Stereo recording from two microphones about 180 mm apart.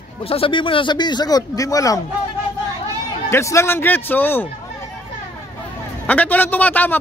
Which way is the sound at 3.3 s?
15° left (ahead or behind).